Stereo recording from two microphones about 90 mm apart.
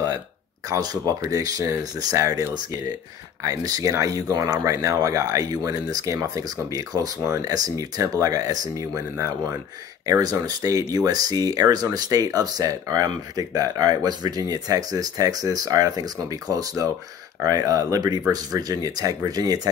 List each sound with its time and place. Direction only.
0.7 s speech: 45° right (ahead or behind)
3.4 s speech: 40° right (ahead or behind)
10.0 s speech: 40° right (ahead or behind)